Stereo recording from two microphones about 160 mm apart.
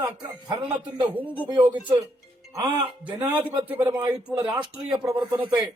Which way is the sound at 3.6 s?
15° right (ahead or behind).